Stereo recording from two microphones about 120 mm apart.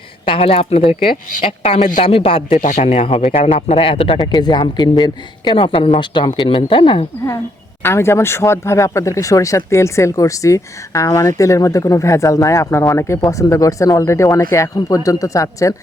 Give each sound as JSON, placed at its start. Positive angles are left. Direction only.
{"t": 0.3, "sound": "speech", "side_deg": 50}
{"t": 2.6, "sound": "a man's voice", "side_deg": 90}
{"t": 2.8, "sound": "speech", "side_deg": 50}
{"t": 4.3, "sound": "speech", "side_deg": 35}
{"t": 7.8, "sound": "speech", "side_deg": 20}